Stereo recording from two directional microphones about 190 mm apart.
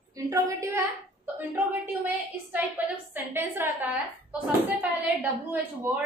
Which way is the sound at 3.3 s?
10° right (ahead or behind).